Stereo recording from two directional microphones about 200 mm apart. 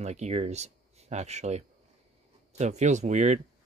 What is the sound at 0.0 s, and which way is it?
Speech, 35° right (ahead or behind).